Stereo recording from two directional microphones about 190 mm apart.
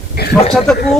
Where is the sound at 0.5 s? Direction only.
5° left (ahead or behind).